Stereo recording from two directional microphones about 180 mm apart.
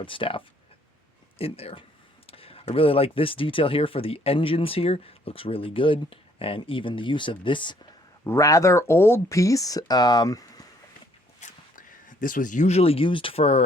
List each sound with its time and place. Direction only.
0.0 s speech: 30° left (ahead or behind)
8.2 s speech: 15° left (ahead or behind)
11.3 s speech: 45° left (ahead or behind)